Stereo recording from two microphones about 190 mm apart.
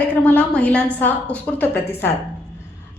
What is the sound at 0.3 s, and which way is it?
A woman's voice, 10° left (ahead or behind).